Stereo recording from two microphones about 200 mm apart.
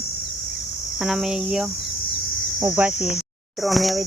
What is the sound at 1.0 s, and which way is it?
Cricket, centre (ahead or behind).